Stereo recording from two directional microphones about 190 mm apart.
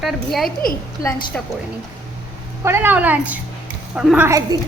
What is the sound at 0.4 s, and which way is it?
Speech, 50° left (ahead or behind).